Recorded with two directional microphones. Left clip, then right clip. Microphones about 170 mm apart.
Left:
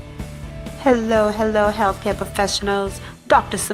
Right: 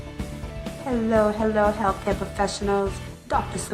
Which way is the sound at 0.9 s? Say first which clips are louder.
Left 5 dB; 35° left (ahead or behind).